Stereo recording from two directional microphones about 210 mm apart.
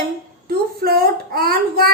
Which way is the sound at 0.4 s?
45° right (ahead or behind).